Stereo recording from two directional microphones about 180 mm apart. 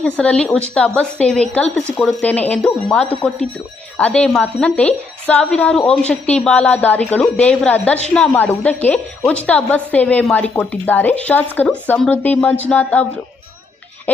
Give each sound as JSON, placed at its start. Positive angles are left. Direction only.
{"t": 0.0, "sound": "a woman's voice", "side_deg": 5}